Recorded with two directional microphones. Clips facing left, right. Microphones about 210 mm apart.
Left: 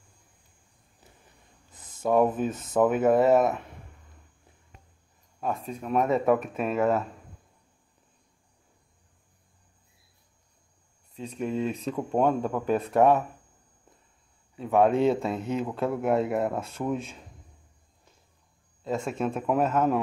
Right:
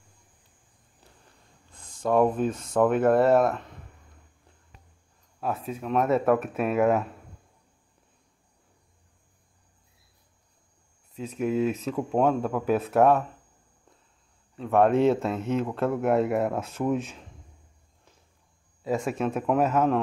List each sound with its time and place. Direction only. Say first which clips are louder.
1.8 s a sound: right 1 dB; 20° left (ahead or behind)
2.0 s speech: right 1 dB; 5° left (ahead or behind)
5.4 s speech: right 1 dB; 5° right (ahead or behind)
11.1 s speech: right 4 dB; 5° right (ahead or behind)
14.5 s speech: right 1 dB; centre (ahead or behind)
18.9 s speech: right 2 dB; 5° right (ahead or behind)